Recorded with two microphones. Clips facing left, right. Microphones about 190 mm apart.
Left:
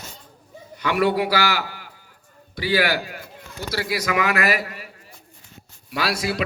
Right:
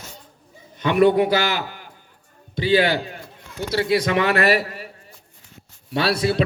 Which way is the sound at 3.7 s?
25° right (ahead or behind).